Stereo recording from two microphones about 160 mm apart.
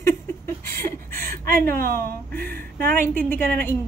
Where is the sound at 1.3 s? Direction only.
65° right (ahead or behind).